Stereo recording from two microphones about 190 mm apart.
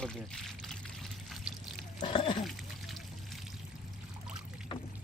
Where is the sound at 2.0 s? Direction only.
25° left (ahead or behind).